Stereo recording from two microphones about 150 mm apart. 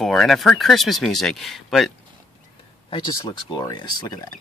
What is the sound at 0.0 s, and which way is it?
Speech, centre (ahead or behind).